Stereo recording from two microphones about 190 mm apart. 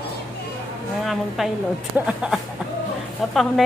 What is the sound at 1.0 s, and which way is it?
A woman's voice, centre (ahead or behind).